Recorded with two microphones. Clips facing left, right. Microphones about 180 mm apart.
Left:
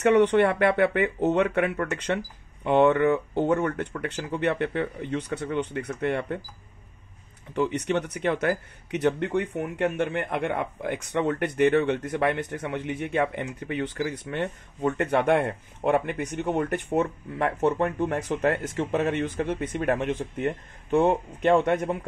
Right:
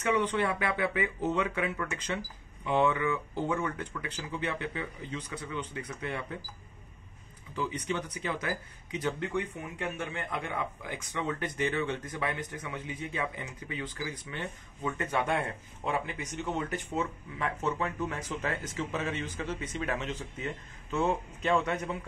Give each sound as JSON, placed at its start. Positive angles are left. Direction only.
{"t": 0.0, "sound": "speech", "side_deg": 70}
{"t": 7.5, "sound": "speech", "side_deg": 70}